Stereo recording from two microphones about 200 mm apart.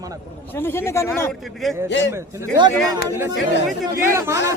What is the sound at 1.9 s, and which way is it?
Speech, 60° left (ahead or behind).